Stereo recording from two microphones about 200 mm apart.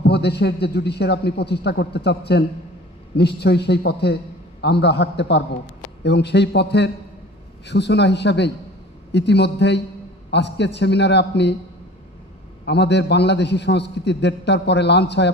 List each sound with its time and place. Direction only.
0.0 s a man's voice: 55° left (ahead or behind)
12.6 s a man's voice: 55° left (ahead or behind)